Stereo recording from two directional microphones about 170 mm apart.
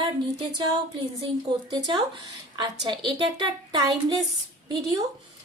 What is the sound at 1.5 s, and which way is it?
A woman's voice, 30° right (ahead or behind).